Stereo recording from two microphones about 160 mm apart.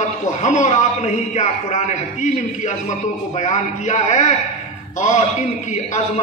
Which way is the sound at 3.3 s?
50° left (ahead or behind).